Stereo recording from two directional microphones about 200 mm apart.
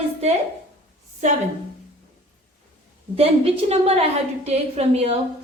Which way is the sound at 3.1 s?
30° right (ahead or behind).